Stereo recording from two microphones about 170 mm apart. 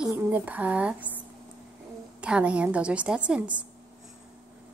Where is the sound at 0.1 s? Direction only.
10° right (ahead or behind).